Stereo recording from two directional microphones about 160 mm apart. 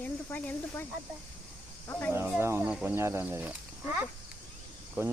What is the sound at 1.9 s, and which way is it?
Speech, 15° left (ahead or behind).